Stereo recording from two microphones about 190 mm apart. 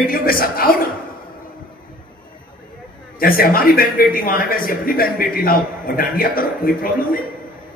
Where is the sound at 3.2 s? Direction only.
50° left (ahead or behind).